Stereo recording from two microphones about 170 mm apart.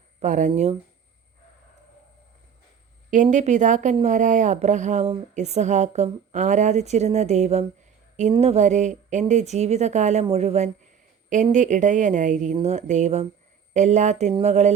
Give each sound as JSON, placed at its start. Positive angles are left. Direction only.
{"t": 0.2, "sound": "speech", "side_deg": -45}
{"t": 3.1, "sound": "speech", "side_deg": -45}